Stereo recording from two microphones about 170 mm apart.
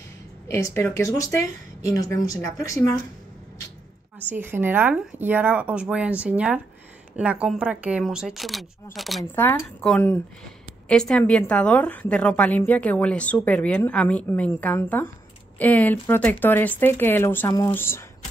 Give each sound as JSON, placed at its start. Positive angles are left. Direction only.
{"t": 0.5, "sound": "a woman's voice", "side_deg": 15}
{"t": 4.3, "sound": "speech", "side_deg": -10}
{"t": 9.3, "sound": "a woman's voice", "side_deg": 10}